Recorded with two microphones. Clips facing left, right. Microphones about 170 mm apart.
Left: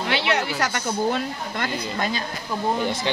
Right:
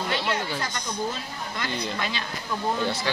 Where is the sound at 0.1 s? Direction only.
75° left (ahead or behind).